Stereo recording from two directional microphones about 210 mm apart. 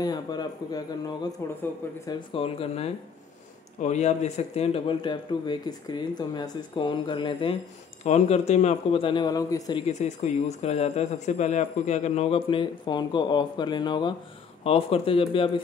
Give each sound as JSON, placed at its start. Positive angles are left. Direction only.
{"t": 0.0, "sound": "speech", "side_deg": 20}
{"t": 9.8, "sound": "speech", "side_deg": 35}